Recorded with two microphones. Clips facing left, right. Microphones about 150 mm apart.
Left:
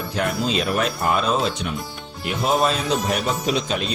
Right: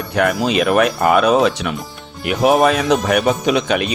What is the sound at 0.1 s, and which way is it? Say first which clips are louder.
Speech: right 7 dB; 70° right (ahead or behind).